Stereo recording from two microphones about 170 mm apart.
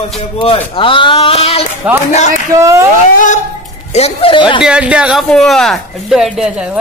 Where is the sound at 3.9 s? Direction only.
35° left (ahead or behind).